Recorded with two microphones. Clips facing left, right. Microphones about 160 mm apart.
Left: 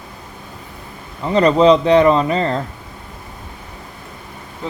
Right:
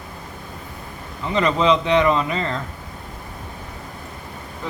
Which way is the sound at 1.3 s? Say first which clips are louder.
Left 7 dB; 40° left (ahead or behind).